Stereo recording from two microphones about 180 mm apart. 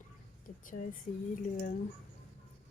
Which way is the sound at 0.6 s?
45° left (ahead or behind).